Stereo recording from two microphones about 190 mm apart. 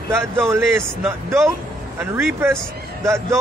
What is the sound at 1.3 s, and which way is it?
Speech, 15° right (ahead or behind).